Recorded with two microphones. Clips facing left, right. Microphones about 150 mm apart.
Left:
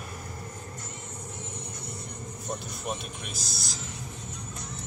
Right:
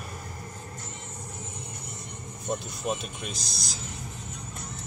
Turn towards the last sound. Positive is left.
turn(degrees=5)  # may be behind; listen again after turning